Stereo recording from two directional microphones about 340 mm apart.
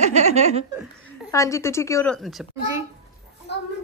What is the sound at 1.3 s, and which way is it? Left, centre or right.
A child's voice, centre.